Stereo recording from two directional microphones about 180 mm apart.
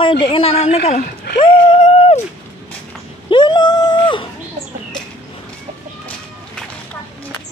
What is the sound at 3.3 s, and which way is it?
Cat, 25° left (ahead or behind).